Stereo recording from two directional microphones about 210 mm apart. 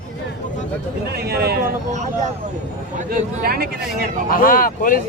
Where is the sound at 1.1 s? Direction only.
50° right (ahead or behind).